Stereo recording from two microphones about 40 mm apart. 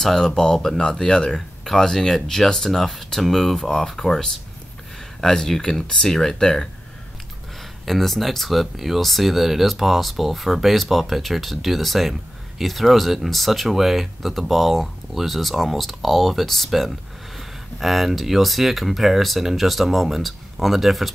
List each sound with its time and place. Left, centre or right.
0.0 s speech: centre
7.8 s speech: centre